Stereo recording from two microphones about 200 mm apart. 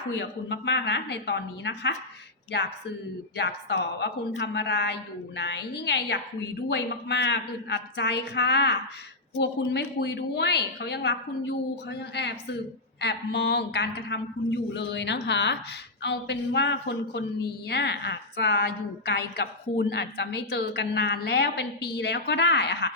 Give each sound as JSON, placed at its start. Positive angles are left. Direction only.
{"t": 0.2, "sound": "a woman's voice", "side_deg": 60}